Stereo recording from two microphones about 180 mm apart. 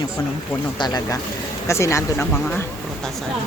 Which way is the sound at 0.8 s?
20° left (ahead or behind).